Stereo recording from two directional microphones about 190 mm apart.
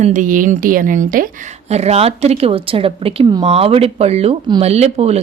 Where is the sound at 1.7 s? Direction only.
35° right (ahead or behind).